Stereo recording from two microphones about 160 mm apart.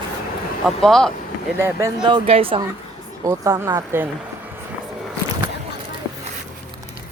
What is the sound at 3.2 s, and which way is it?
Speech, 20° right (ahead or behind).